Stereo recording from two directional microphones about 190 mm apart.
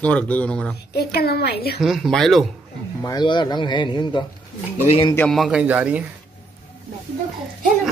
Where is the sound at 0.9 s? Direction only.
55° left (ahead or behind).